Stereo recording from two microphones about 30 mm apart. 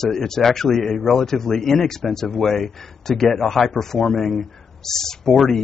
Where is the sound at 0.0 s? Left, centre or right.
Centre.